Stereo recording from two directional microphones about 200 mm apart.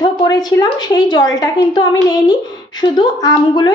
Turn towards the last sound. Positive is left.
turn(degrees=20)  # may be behind; listen again after turning